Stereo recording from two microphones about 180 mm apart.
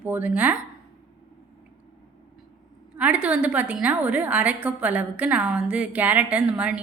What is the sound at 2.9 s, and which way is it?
A woman's voice, 5° right (ahead or behind).